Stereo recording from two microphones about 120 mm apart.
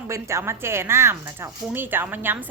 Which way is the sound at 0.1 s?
25° right (ahead or behind).